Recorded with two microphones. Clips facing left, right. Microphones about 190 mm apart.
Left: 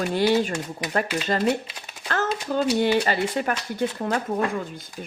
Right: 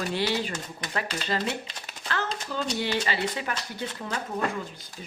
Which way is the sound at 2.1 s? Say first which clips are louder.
Left 6 dB; 45° left (ahead or behind).